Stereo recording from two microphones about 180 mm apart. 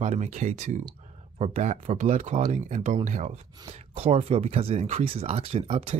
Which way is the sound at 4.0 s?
35° right (ahead or behind).